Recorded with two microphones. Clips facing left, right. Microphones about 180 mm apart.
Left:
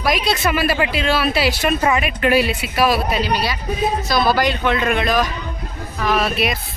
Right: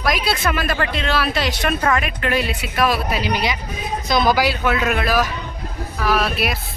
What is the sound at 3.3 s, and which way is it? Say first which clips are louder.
Speech: left 1 dB; 15° right (ahead or behind).